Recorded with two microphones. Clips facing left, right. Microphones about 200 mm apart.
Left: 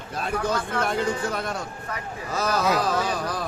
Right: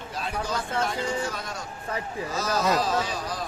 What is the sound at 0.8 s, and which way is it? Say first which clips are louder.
Speech: left 3 dB; 60° left (ahead or behind).